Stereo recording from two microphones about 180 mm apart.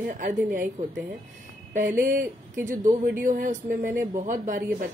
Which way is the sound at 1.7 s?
45° right (ahead or behind).